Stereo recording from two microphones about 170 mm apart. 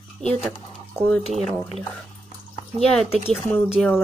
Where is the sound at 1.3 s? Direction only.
Centre (ahead or behind).